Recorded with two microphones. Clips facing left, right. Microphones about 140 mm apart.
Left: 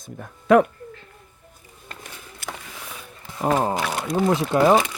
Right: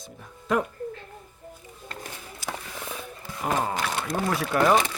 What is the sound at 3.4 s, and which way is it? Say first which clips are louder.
Speech: left 6 dB; 30° left (ahead or behind).